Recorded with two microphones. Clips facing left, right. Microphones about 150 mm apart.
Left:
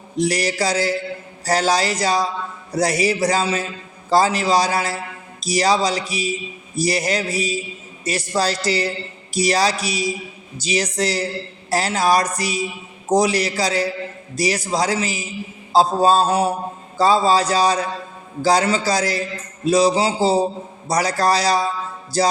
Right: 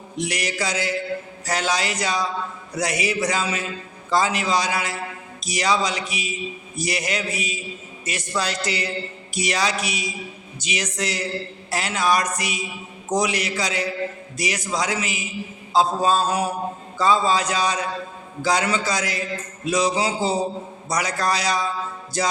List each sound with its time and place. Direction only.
0.2 s speech: 35° left (ahead or behind)